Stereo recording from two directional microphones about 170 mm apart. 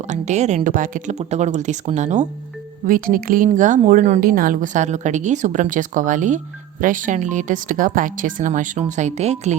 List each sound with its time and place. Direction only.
0.1 s a woman's voice: 45° right (ahead or behind)
2.8 s a woman's voice: 55° right (ahead or behind)